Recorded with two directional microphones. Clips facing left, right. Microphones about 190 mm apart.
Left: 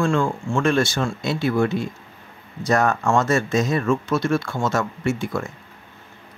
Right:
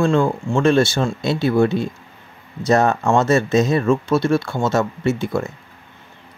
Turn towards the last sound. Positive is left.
turn(degrees=-25)  # may be behind; listen again after turning